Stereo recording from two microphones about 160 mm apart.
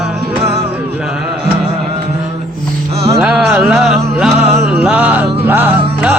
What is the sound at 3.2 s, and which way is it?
Music, 5° right (ahead or behind).